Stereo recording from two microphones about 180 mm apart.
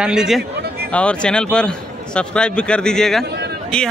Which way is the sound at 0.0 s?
5° right (ahead or behind).